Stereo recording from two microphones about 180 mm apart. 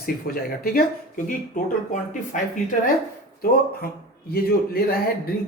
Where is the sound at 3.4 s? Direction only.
55° left (ahead or behind).